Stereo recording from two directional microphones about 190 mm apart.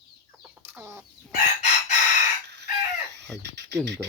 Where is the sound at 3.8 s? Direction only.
65° right (ahead or behind).